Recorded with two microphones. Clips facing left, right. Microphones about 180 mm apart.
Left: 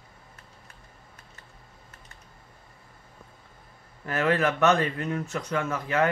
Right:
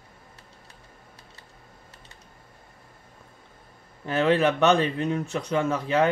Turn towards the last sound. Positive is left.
turn(degrees=-25)  # may be behind; listen again after turning